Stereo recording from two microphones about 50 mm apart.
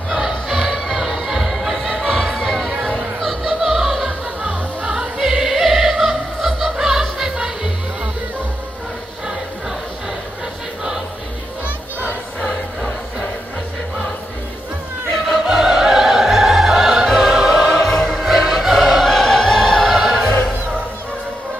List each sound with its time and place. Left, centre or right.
0.1 s music: centre
3.2 s music: centre
4.4 s music: centre
5.1 s music: centre
15.4 s opera: centre
17.6 s music: centre
18.2 s opera: centre
19.9 s music: centre